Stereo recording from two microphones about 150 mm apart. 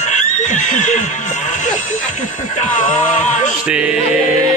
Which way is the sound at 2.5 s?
55° left (ahead or behind).